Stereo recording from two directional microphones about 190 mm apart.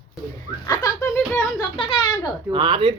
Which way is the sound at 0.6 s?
20° left (ahead or behind).